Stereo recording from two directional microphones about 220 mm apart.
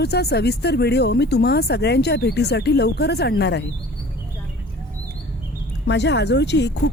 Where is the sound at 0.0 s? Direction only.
50° left (ahead or behind).